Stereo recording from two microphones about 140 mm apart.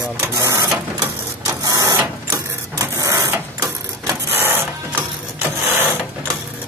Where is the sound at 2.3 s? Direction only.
20° right (ahead or behind).